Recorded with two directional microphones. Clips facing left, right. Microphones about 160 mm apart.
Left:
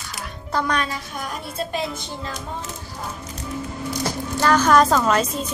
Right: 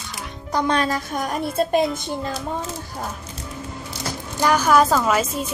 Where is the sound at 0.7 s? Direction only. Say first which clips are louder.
Right 4 dB; 40° right (ahead or behind).